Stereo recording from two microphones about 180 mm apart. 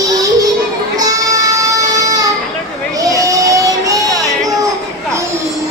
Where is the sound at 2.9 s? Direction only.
20° right (ahead or behind).